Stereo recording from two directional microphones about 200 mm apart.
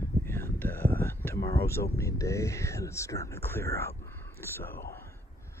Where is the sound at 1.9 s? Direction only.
15° left (ahead or behind).